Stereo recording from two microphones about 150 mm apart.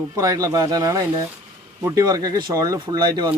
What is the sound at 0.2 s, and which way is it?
Speech, 25° right (ahead or behind).